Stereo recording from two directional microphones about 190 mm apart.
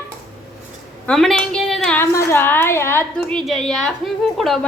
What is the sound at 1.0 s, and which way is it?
A woman's voice, 5° left (ahead or behind).